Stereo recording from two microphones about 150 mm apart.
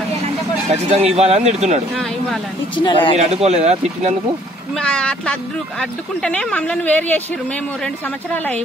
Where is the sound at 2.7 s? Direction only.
35° left (ahead or behind).